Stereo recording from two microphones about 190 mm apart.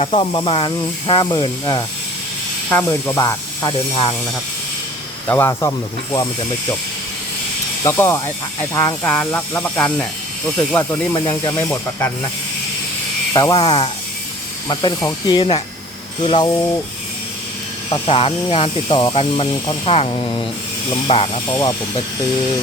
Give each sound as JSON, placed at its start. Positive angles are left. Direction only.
{"t": 0.0, "sound": "speech", "side_deg": 30}
{"t": 2.6, "sound": "speech", "side_deg": 10}
{"t": 5.3, "sound": "speech", "side_deg": 15}
{"t": 7.9, "sound": "speech", "side_deg": 15}
{"t": 11.1, "sound": "speech", "side_deg": 20}
{"t": 11.7, "sound": "speech", "side_deg": 10}
{"t": 13.3, "sound": "speech", "side_deg": 20}
{"t": 17.9, "sound": "speech", "side_deg": 30}
{"t": 21.5, "sound": "speech", "side_deg": 15}